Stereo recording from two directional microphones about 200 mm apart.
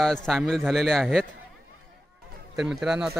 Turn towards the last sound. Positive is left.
turn(degrees=-5)  # may be behind; listen again after turning